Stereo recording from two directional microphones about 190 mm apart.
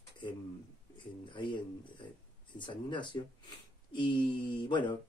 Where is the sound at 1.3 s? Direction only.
25° left (ahead or behind).